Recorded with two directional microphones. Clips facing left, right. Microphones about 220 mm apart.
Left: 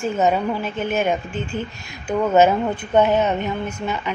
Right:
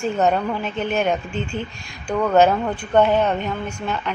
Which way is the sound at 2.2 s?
10° left (ahead or behind).